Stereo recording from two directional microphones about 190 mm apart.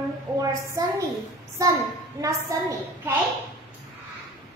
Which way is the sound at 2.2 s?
15° right (ahead or behind).